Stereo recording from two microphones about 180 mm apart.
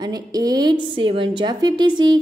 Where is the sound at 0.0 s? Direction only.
20° right (ahead or behind).